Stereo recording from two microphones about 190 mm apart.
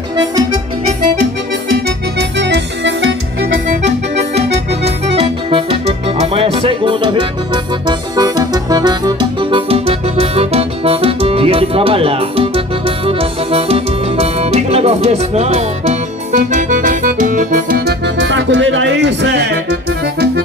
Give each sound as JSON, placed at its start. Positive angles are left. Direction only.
{"t": 0.1, "sound": "music", "side_deg": -20}
{"t": 1.9, "sound": "music", "side_deg": -65}
{"t": 4.1, "sound": "accordion", "side_deg": -35}